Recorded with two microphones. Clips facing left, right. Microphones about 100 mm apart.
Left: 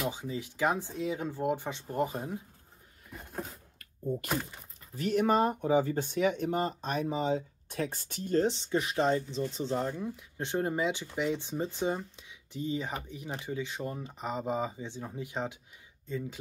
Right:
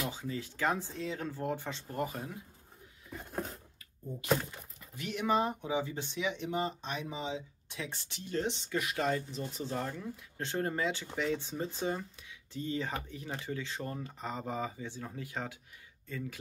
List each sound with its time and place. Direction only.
0.0 s speech: 20° left (ahead or behind)
4.9 s speech: 40° left (ahead or behind); by 16.3 s 20° left (ahead or behind)